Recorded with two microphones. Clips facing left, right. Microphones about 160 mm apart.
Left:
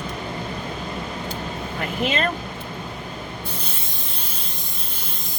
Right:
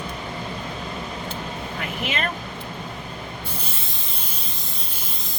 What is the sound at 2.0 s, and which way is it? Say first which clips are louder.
Speech: left 5 dB; 35° left (ahead or behind).